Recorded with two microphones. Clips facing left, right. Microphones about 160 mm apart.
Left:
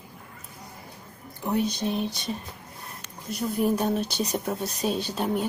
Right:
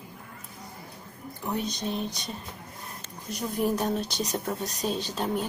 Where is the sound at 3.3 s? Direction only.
Centre (ahead or behind).